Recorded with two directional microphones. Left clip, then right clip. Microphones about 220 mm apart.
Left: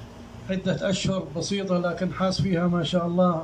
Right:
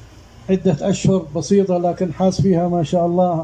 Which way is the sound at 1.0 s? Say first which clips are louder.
Right 9 dB; 30° right (ahead or behind).